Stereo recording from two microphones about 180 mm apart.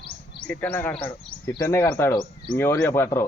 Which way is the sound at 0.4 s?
10° left (ahead or behind).